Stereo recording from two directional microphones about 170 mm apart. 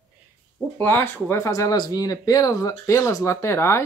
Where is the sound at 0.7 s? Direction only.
10° left (ahead or behind).